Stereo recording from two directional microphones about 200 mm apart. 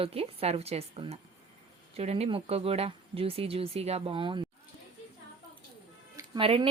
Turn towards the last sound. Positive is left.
turn(degrees=-30)  # may be behind; listen again after turning